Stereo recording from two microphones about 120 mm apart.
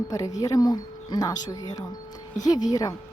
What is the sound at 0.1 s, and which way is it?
Speech, 30° left (ahead or behind).